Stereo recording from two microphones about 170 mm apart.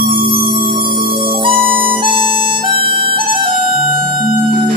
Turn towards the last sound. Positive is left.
turn(degrees=-30)  # may be behind; listen again after turning